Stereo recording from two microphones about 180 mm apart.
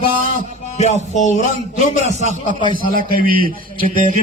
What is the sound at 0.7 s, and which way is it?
Music, 40° left (ahead or behind).